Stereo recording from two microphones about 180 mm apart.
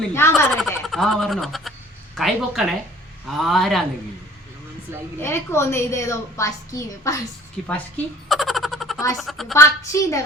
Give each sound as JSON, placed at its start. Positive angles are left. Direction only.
{"t": 0.1, "sound": "a woman's voice", "side_deg": 15}
{"t": 0.5, "sound": "speech", "side_deg": 0}
{"t": 5.2, "sound": "a woman's voice", "side_deg": 15}
{"t": 7.7, "sound": "a sound", "side_deg": 5}
{"t": 9.1, "sound": "speech", "side_deg": 0}
{"t": 9.6, "sound": "a woman's voice", "side_deg": 15}